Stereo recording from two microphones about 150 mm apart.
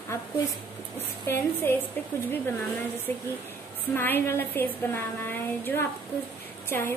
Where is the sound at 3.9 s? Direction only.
15° left (ahead or behind).